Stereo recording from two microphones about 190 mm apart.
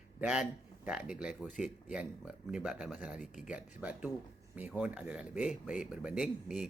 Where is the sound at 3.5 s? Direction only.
10° right (ahead or behind).